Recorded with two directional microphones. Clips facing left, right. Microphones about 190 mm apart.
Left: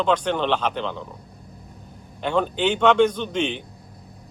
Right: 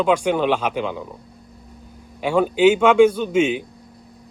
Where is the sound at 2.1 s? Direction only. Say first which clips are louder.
Right 5 dB; 10° right (ahead or behind).